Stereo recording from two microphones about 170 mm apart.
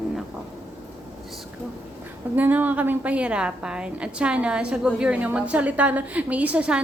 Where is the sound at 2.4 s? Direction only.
10° right (ahead or behind).